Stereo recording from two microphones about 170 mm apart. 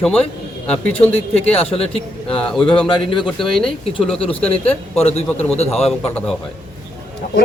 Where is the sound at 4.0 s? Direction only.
35° left (ahead or behind).